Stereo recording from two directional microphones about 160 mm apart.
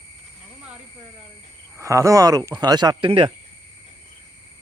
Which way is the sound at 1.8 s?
20° right (ahead or behind).